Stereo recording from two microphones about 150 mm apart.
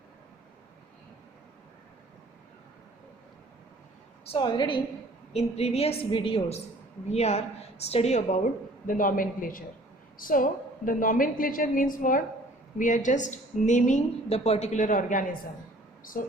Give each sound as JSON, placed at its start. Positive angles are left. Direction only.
{"t": 4.3, "sound": "a woman's voice", "side_deg": 35}
{"t": 5.3, "sound": "a woman's voice", "side_deg": 45}
{"t": 7.1, "sound": "a woman's voice", "side_deg": 45}
{"t": 8.9, "sound": "a woman's voice", "side_deg": 65}
{"t": 16.1, "sound": "speech", "side_deg": 70}